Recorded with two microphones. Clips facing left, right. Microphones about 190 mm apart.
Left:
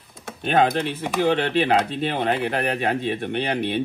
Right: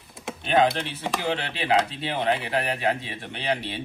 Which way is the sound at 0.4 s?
50° left (ahead or behind).